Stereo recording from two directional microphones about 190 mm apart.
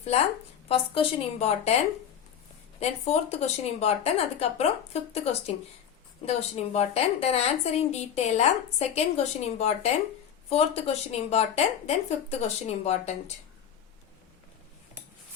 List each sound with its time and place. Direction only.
0.0 s a woman's voice: 35° left (ahead or behind)
2.8 s a woman's voice: 35° left (ahead or behind)
6.2 s a woman's voice: 35° left (ahead or behind)